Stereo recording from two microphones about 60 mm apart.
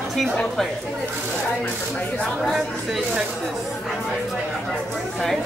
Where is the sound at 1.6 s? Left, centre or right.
Left.